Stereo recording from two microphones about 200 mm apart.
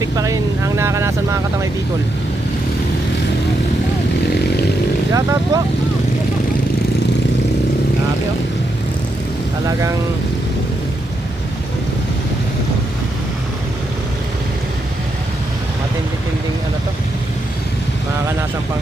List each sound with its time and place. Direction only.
0.0 s speech: 15° right (ahead or behind)
5.1 s speech: 15° right (ahead or behind)